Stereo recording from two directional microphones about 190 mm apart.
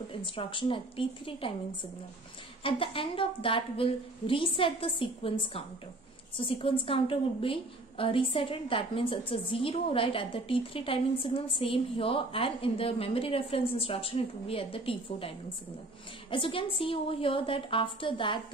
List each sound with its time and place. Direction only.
0.2 s a woman's voice: 25° left (ahead or behind)
2.6 s a woman's voice: 30° left (ahead or behind)